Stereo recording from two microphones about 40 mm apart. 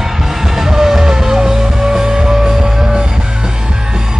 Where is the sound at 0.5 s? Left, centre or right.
Centre.